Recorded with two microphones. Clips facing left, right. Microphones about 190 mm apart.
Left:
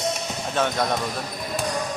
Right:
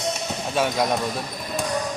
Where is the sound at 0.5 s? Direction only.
10° right (ahead or behind).